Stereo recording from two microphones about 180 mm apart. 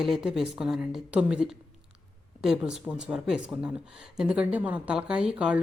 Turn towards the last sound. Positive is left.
turn(degrees=-5)  # may be behind; listen again after turning